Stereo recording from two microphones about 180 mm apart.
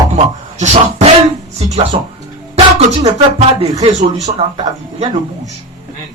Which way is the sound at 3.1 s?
35° right (ahead or behind).